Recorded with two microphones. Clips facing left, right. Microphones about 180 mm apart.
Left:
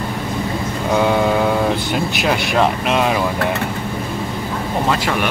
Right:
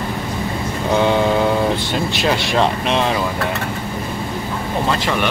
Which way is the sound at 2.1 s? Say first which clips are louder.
Even; 5° left (ahead or behind).